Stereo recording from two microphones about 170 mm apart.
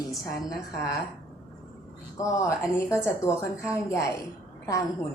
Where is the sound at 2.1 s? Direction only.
15° left (ahead or behind).